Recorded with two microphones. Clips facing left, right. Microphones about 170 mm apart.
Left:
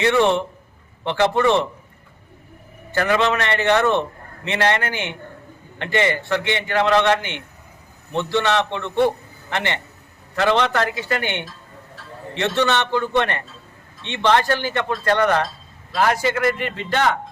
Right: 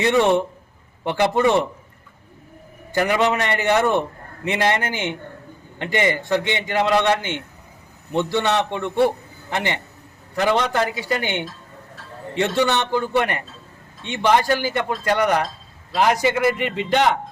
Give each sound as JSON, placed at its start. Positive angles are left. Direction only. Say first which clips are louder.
{"t": 0.0, "sound": "a man's voice", "louder": "even", "side_deg": -15}
{"t": 2.9, "sound": "a man's voice", "louder": "even", "side_deg": -15}
{"t": 7.2, "sound": "a man's voice", "louder": "right 3 dB", "side_deg": 15}
{"t": 8.1, "sound": "a man's voice", "louder": "even", "side_deg": -15}